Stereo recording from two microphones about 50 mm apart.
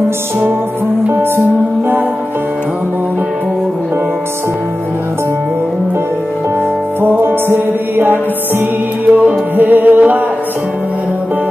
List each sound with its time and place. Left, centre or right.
7.0 s music: right